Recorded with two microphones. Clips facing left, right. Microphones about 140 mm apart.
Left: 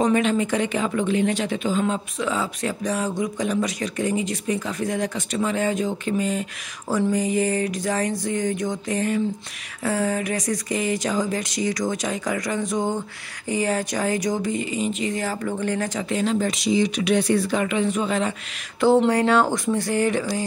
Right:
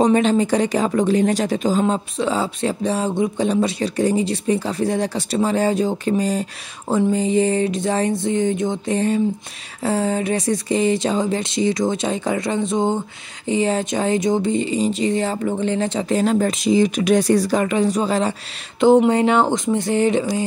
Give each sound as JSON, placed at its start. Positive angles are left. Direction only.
{"t": 0.0, "sound": "speech", "side_deg": -30}
{"t": 18.8, "sound": "speech", "side_deg": -20}